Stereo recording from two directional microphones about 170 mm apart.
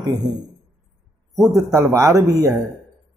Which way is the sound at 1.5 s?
20° right (ahead or behind).